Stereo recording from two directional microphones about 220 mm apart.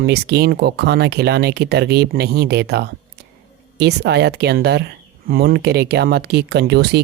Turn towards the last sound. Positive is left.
turn(degrees=-50)  # may be behind; listen again after turning